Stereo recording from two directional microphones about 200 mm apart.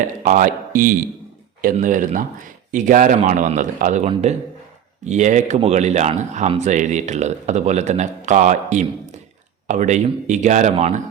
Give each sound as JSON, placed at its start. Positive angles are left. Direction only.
{"t": 0.2, "sound": "speech", "side_deg": -40}